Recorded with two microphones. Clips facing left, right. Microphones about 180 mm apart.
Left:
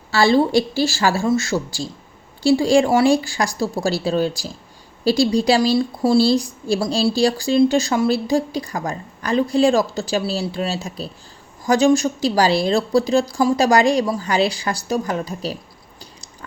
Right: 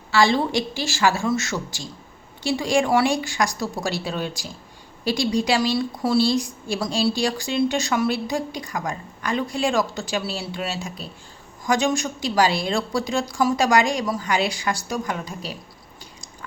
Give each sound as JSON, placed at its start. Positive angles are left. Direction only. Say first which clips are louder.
{"t": 0.1, "sound": "a woman's voice", "louder": "left 4 dB", "side_deg": 35}